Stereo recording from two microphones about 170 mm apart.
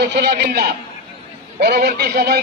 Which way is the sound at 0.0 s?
80° right.